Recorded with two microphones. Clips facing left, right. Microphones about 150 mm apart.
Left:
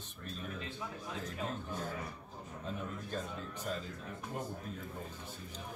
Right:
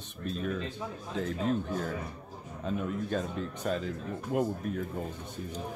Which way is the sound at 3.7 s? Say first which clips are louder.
Right 9 dB; 75° right (ahead or behind).